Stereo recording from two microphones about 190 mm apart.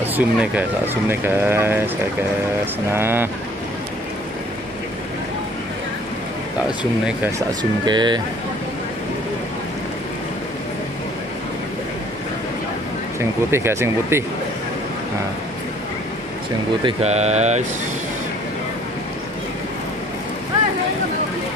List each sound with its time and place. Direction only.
0.1 s speech: 10° right (ahead or behind)
7.3 s speech: 25° right (ahead or behind)
13.2 s speech: 15° right (ahead or behind)
16.8 s speech: 35° right (ahead or behind)